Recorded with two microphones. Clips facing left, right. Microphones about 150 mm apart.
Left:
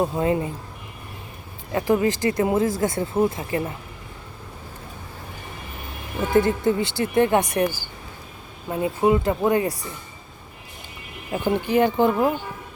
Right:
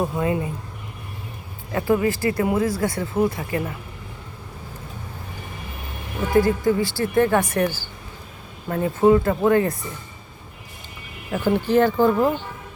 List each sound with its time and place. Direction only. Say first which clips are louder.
0.0 s speech: left 1 dB; 25° left (ahead or behind)
1.7 s speech: even; 20° left (ahead or behind)
6.3 s speech: right 1 dB; 25° left (ahead or behind)
11.3 s speech: right 2 dB; 15° left (ahead or behind)